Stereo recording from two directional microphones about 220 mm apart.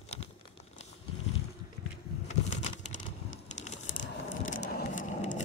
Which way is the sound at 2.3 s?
35° left (ahead or behind).